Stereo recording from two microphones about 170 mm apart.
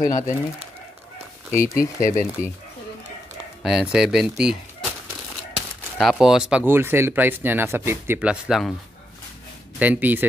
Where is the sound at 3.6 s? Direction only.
5° right (ahead or behind).